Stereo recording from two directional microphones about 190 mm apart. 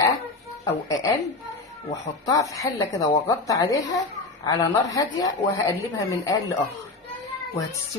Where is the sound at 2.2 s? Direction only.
15° left (ahead or behind).